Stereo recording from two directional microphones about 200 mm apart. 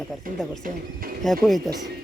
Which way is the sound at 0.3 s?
45° right (ahead or behind).